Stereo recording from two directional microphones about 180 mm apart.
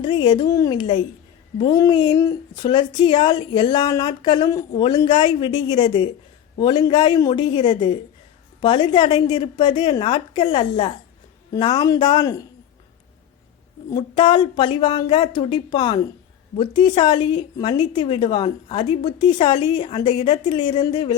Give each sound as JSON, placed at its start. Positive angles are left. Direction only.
{"t": 0.0, "sound": "a woman's voice", "side_deg": 25}
{"t": 13.9, "sound": "a woman's voice", "side_deg": 25}